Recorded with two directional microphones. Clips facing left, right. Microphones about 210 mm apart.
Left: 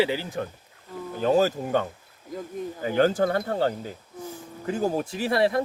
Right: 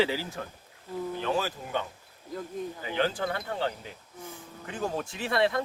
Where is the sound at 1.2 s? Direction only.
40° left (ahead or behind).